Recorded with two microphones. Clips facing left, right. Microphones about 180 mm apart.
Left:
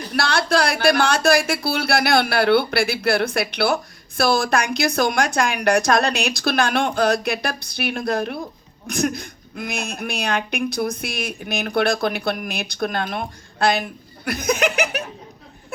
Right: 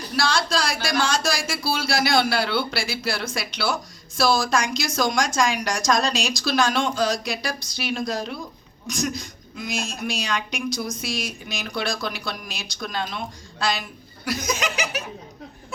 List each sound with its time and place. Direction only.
0.2 s a woman's voice: 60° left (ahead or behind)